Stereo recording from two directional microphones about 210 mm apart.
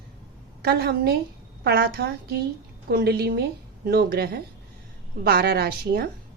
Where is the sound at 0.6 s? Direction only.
50° right (ahead or behind).